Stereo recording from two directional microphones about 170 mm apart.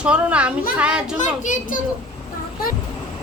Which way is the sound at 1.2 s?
45° left (ahead or behind).